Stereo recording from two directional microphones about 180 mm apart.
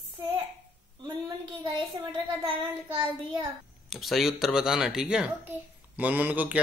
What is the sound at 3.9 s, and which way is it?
A child's voice, centre (ahead or behind).